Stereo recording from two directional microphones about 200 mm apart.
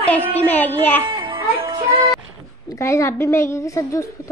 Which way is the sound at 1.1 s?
25° right (ahead or behind).